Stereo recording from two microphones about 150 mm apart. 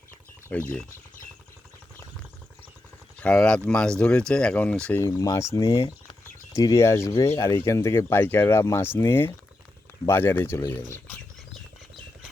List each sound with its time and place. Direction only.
0.4 s speech: 10° left (ahead or behind)
3.2 s speech: 5° left (ahead or behind)
5.0 s speech: 20° left (ahead or behind)